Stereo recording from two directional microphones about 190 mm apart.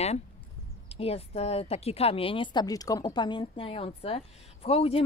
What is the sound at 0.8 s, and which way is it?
Speech, 30° left (ahead or behind).